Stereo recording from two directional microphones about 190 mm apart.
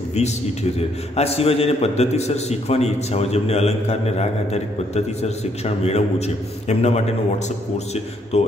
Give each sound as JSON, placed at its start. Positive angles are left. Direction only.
{"t": 0.7, "sound": "a man's voice", "side_deg": 30}